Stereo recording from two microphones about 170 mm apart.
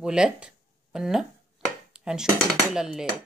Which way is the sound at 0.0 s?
5° right (ahead or behind).